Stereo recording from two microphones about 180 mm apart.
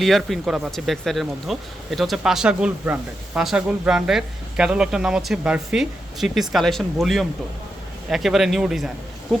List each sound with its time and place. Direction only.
0.0 s speech: centre (ahead or behind)